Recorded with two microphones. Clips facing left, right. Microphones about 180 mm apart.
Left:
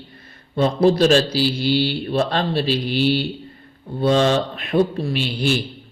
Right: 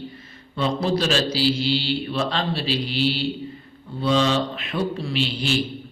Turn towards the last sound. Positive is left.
turn(degrees=50)  # may be behind; listen again after turning